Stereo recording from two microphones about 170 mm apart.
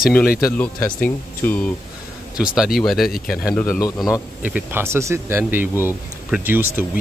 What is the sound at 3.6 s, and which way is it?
Speech, 10° left (ahead or behind).